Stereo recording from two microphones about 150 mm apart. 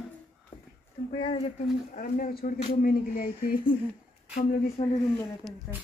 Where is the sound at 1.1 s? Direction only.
35° left (ahead or behind).